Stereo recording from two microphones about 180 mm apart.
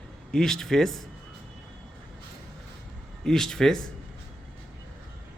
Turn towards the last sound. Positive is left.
turn(degrees=5)  # may be behind; listen again after turning